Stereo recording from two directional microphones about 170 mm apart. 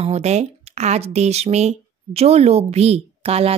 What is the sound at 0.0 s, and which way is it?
Speech, 40° right (ahead or behind).